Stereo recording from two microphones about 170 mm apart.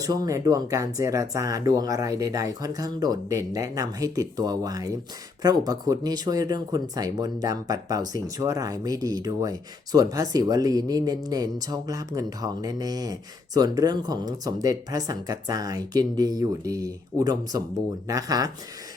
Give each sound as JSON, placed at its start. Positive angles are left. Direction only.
{"t": 0.0, "sound": "speech", "side_deg": -20}